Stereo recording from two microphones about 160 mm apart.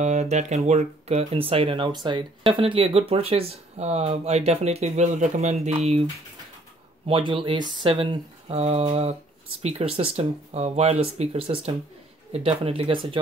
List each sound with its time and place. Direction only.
0.0 s speech: 45° right (ahead or behind)
7.1 s speech: 35° right (ahead or behind)